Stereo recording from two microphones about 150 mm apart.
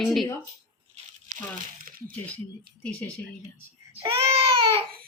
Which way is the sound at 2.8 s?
10° left (ahead or behind).